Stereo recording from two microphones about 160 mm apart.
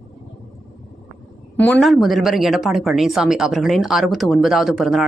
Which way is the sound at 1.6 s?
5° left (ahead or behind).